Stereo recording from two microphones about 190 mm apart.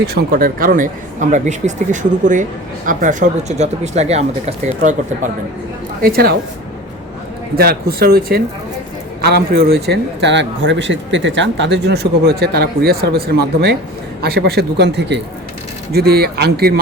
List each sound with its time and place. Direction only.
0.1 s speech: 50° right (ahead or behind)
6.0 s speech: 50° right (ahead or behind)
7.5 s a man's voice: 55° right (ahead or behind)